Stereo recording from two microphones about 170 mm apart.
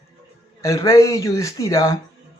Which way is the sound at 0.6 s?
20° left (ahead or behind).